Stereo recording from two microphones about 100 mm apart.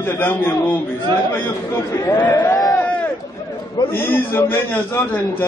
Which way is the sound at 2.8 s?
10° left (ahead or behind).